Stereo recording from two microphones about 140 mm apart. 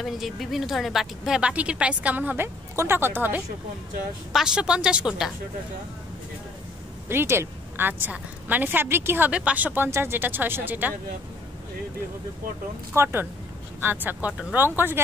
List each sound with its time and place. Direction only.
0.0 s a woman's voice: centre (ahead or behind)
7.1 s a woman's voice: 15° right (ahead or behind)
12.9 s a woman's voice: 15° right (ahead or behind)